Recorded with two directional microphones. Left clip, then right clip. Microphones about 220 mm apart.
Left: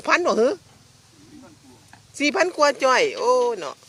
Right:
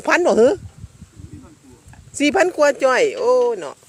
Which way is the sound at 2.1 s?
35° right (ahead or behind).